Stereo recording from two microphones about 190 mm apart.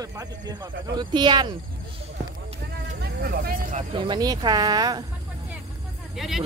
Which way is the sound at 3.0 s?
55° right (ahead or behind).